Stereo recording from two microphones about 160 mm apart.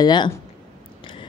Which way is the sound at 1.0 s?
30° left (ahead or behind).